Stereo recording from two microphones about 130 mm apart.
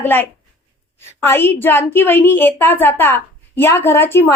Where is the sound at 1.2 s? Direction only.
15° left (ahead or behind).